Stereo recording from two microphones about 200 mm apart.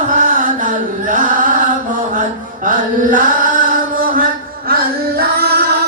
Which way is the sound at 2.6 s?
40° right (ahead or behind).